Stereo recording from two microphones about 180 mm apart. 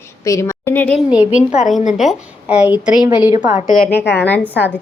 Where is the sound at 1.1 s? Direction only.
5° right (ahead or behind).